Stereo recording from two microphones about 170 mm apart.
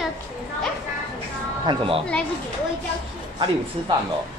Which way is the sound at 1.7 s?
35° right (ahead or behind).